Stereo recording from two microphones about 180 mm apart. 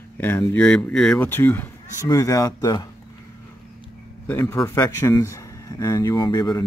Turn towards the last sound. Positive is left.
turn(degrees=20)  # may be behind; listen again after turning